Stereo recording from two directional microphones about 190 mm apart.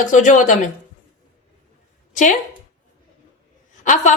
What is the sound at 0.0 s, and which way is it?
Speech, 40° left (ahead or behind).